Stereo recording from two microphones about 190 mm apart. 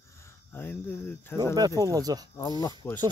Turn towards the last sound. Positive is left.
turn(degrees=15)  # may be behind; listen again after turning